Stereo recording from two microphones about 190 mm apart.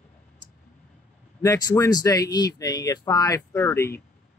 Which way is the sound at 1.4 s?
20° left (ahead or behind).